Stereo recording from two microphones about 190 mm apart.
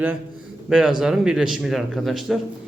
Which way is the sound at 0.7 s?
Centre (ahead or behind).